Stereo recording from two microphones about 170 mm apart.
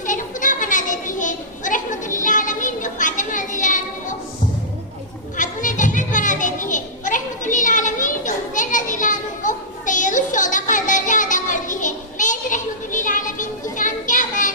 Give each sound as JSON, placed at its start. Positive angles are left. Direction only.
{"t": 0.0, "sound": "children playing", "side_deg": 50}
{"t": 5.4, "sound": "children playing", "side_deg": 50}